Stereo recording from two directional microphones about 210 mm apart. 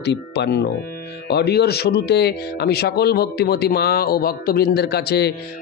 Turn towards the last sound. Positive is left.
turn(degrees=50)  # may be behind; listen again after turning